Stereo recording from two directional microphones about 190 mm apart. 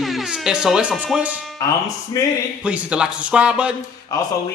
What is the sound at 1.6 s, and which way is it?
Speech, 20° left (ahead or behind).